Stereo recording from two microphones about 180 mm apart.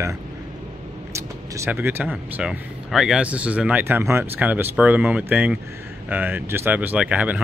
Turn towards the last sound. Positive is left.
turn(degrees=-10)  # may be behind; listen again after turning